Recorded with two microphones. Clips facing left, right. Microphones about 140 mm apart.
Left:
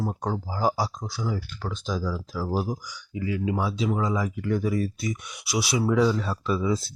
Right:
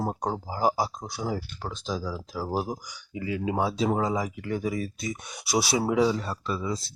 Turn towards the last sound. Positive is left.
turn(degrees=5)  # may be behind; listen again after turning